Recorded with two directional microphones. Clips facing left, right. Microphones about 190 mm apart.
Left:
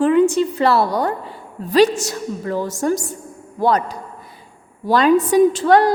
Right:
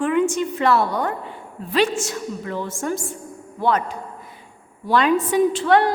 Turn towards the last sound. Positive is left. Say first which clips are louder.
# left 4 dB
turn(degrees=40)  # may be behind; listen again after turning